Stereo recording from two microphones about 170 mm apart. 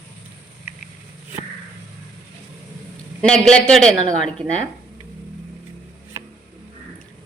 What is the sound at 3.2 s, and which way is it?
Speech, 5° left (ahead or behind).